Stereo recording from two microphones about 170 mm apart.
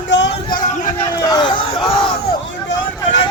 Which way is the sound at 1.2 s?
25° left (ahead or behind).